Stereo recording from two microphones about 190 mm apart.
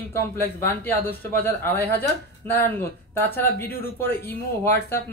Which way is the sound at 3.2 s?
10° left (ahead or behind).